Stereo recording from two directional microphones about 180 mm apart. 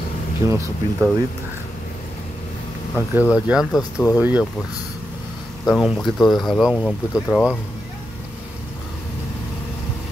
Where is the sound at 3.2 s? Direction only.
5° right (ahead or behind).